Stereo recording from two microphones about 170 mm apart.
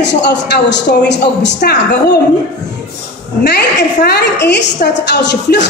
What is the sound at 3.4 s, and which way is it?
A woman's voice, 75° left (ahead or behind).